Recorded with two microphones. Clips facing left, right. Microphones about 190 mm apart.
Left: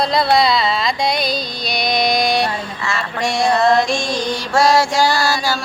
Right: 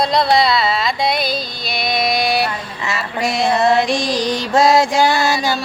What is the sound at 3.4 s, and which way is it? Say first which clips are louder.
Female singing: even; 20° right (ahead or behind).